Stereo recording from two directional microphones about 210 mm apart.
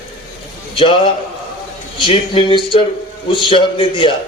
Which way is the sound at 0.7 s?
25° left (ahead or behind).